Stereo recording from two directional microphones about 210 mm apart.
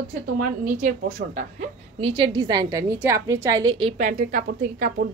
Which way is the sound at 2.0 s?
25° right (ahead or behind).